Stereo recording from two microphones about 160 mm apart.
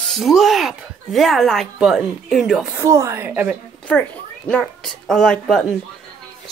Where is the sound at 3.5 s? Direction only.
5° left (ahead or behind).